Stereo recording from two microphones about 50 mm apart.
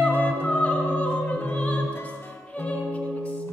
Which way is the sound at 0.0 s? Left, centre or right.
Left.